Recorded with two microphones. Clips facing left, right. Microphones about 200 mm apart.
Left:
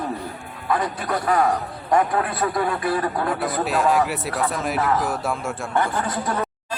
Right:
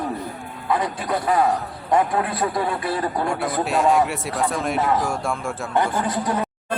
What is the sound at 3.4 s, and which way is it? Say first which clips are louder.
Speech: right 2 dB; centre (ahead or behind).